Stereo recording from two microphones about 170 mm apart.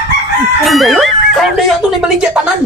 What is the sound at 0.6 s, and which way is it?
Speech, centre (ahead or behind).